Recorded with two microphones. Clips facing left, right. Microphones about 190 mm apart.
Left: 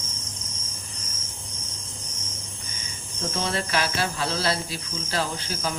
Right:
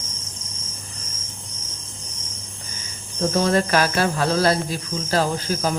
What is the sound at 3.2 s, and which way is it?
Cricket, 40° right (ahead or behind).